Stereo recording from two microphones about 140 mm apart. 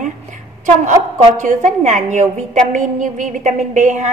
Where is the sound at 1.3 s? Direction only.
65° right (ahead or behind).